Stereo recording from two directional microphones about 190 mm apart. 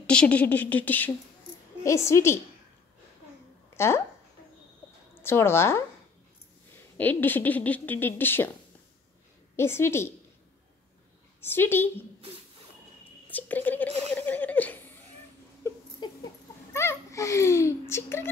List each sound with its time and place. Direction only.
0.0 s speech: 5° left (ahead or behind)
3.7 s speech: 15° left (ahead or behind)
5.2 s speech: 10° left (ahead or behind)
7.0 s speech: 10° left (ahead or behind)
9.6 s speech: 15° left (ahead or behind)
11.4 s speech: 10° left (ahead or behind)
13.3 s speech: 10° left (ahead or behind)
13.8 s speech: 35° right (ahead or behind)
14.1 s laughter: 10° left (ahead or behind)
15.7 s a sound: 15° left (ahead or behind)
16.7 s a child's voice: 15° left (ahead or behind)